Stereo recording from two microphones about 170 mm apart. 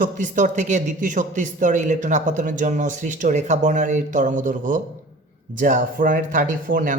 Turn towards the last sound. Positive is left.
turn(degrees=-50)  # may be behind; listen again after turning